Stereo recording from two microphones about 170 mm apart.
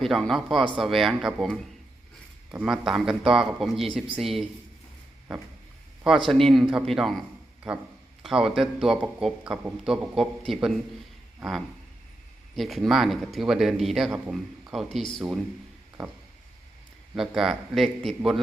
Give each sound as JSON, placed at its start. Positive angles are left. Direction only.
{"t": 0.0, "sound": "a man's voice", "side_deg": 0}
{"t": 6.2, "sound": "a man's voice", "side_deg": 0}
{"t": 12.5, "sound": "a man's voice", "side_deg": 0}
{"t": 17.2, "sound": "a man's voice", "side_deg": 0}